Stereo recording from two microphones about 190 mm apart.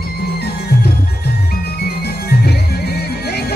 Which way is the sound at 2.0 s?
55° left (ahead or behind).